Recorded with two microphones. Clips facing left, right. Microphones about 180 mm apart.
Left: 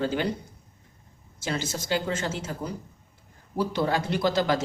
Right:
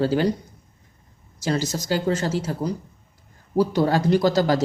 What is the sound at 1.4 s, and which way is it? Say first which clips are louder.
Speech: right 6 dB; 40° right (ahead or behind).